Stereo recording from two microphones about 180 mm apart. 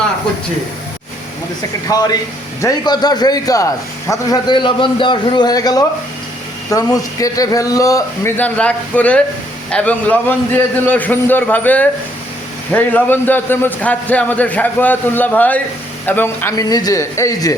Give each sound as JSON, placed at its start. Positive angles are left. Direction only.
{"t": 1.9, "sound": "a man's voice", "side_deg": 20}